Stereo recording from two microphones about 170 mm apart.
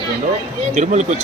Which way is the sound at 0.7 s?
45° right (ahead or behind).